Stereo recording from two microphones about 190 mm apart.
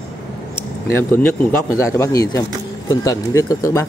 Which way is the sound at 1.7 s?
15° left (ahead or behind).